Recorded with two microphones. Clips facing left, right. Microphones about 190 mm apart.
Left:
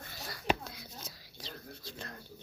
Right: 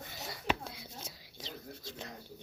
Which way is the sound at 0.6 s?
25° right (ahead or behind).